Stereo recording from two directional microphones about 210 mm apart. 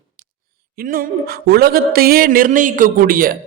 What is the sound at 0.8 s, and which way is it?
A man's voice, 45° right (ahead or behind).